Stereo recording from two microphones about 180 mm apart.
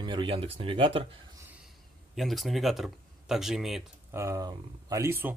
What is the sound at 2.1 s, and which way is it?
Speech, centre (ahead or behind).